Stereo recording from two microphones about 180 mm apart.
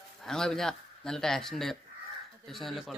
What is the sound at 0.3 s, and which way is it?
Speech, 5° left (ahead or behind).